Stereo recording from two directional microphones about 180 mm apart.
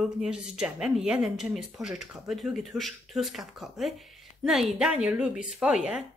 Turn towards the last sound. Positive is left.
turn(degrees=-5)  # may be behind; listen again after turning